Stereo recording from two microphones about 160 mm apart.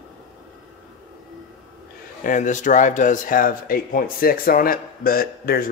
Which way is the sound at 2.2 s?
55° left (ahead or behind).